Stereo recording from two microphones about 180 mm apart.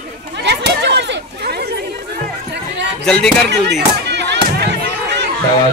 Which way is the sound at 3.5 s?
70° right (ahead or behind).